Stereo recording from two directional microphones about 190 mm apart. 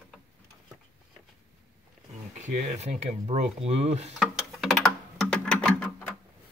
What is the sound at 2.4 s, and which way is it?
Speech, 35° right (ahead or behind).